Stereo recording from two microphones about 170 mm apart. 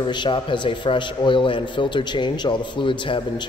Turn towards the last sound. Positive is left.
turn(degrees=30)  # may be behind; listen again after turning